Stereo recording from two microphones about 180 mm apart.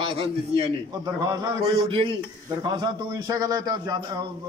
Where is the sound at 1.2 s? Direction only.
20° right (ahead or behind).